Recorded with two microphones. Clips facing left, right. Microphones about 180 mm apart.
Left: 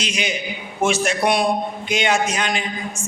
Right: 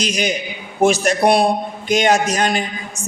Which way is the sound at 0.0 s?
40° right (ahead or behind).